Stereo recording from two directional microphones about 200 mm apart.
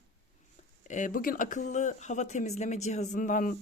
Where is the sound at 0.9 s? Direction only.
40° left (ahead or behind).